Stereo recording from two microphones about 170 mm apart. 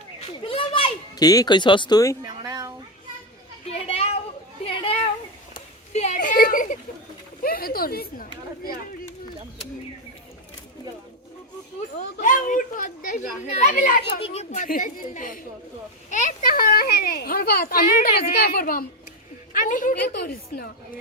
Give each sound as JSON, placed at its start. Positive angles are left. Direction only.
{"t": 0.4, "sound": "speech", "side_deg": 30}
{"t": 2.2, "sound": "a sound", "side_deg": -25}
{"t": 3.7, "sound": "a sound", "side_deg": 35}
{"t": 7.4, "sound": "chatter", "side_deg": 60}
{"t": 11.9, "sound": "speech", "side_deg": 50}
{"t": 14.0, "sound": "a child's voice", "side_deg": 30}
{"t": 14.5, "sound": "a child's voice", "side_deg": 50}
{"t": 19.5, "sound": "speech", "side_deg": 50}